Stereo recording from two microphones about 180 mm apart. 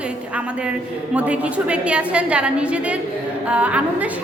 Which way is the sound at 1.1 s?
5° right (ahead or behind).